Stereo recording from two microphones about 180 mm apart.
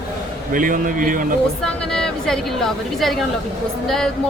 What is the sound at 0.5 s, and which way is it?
Speech, 50° right (ahead or behind).